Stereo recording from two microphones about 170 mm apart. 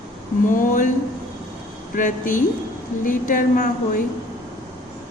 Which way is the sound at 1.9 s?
50° left (ahead or behind).